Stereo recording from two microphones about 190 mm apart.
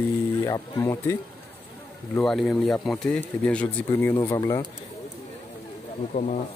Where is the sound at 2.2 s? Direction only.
Centre (ahead or behind).